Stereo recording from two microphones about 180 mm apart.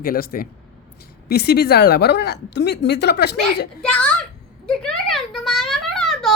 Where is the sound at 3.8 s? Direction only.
5° left (ahead or behind).